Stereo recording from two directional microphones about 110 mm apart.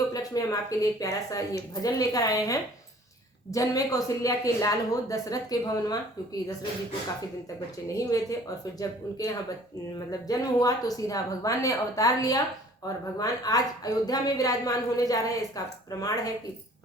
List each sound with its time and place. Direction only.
0.1 s speech: 35° left (ahead or behind)
7.9 s speech: 30° left (ahead or behind)